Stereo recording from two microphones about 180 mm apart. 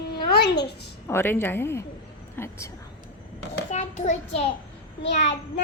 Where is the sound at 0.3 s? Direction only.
65° left (ahead or behind).